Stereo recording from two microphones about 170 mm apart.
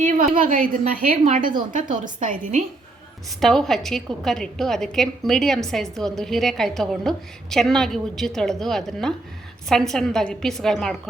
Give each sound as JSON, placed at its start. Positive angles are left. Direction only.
{"t": 0.0, "sound": "a woman's voice", "side_deg": -50}
{"t": 3.2, "sound": "a woman's voice", "side_deg": 0}